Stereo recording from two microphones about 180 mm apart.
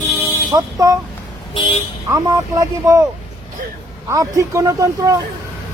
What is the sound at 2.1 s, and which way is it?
Speech, 20° right (ahead or behind).